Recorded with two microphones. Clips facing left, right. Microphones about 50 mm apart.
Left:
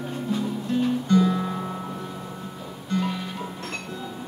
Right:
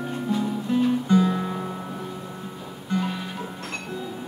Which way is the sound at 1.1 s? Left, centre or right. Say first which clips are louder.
Even; centre.